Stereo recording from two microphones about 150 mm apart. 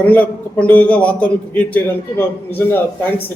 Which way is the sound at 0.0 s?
10° left (ahead or behind).